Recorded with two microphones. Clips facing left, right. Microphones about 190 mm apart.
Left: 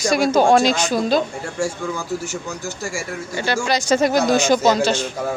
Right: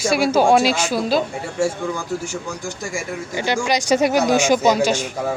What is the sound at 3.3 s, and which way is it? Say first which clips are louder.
Speech: even; 15° right (ahead or behind).